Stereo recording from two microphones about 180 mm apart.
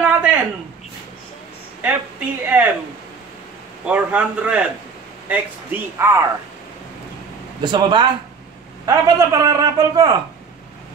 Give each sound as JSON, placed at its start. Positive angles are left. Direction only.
{"t": 0.0, "sound": "a sound", "side_deg": -5}
{"t": 1.8, "sound": "speech", "side_deg": -10}
{"t": 3.8, "sound": "speech", "side_deg": -5}
{"t": 7.6, "sound": "a man's voice", "side_deg": -25}